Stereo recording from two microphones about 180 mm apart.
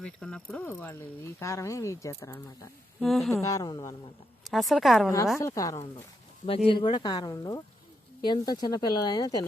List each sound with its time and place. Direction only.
0.0 s speech: 5° left (ahead or behind)
3.0 s speech: centre (ahead or behind)
3.4 s speech: 20° left (ahead or behind)
4.4 s speech: centre (ahead or behind)
5.4 s speech: 20° left (ahead or behind)